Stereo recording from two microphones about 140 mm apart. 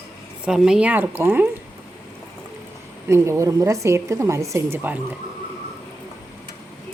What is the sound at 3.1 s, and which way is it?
A woman's voice, 20° right (ahead or behind).